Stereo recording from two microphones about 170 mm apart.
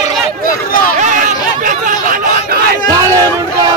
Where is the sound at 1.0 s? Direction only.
50° right (ahead or behind).